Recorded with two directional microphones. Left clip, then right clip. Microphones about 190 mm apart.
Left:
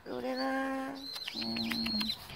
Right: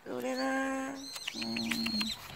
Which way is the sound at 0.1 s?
15° right (ahead or behind).